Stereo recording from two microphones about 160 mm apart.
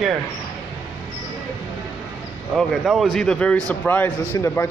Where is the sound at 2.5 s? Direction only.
Centre (ahead or behind).